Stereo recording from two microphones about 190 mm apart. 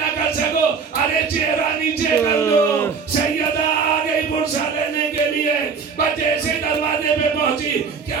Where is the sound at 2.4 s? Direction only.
10° left (ahead or behind).